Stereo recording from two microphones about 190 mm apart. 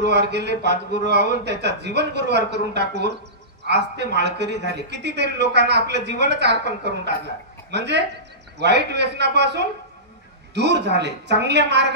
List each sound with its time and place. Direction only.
0.0 s a man's voice: 60° right (ahead or behind)